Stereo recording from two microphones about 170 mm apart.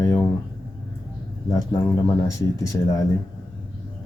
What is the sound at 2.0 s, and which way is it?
Speech, 20° left (ahead or behind).